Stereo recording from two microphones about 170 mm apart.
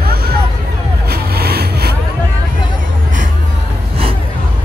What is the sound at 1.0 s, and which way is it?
Vehicle, 70° right (ahead or behind).